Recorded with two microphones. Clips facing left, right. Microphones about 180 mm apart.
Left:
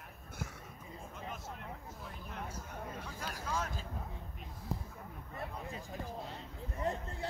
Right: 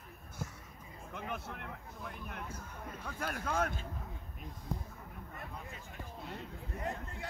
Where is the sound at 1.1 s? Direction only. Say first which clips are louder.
Right 5 dB; 60° right (ahead or behind).